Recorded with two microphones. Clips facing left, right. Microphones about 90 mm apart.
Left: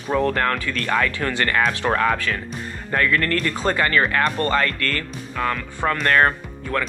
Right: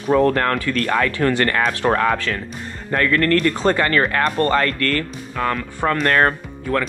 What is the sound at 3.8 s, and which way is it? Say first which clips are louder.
Speech: right 1 dB; 40° right (ahead or behind).